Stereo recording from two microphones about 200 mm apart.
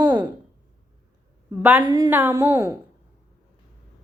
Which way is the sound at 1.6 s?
10° right (ahead or behind).